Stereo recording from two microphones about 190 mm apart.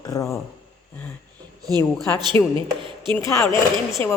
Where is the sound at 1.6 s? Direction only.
20° right (ahead or behind).